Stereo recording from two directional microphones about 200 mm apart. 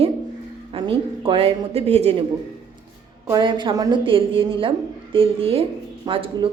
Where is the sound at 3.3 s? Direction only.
20° right (ahead or behind).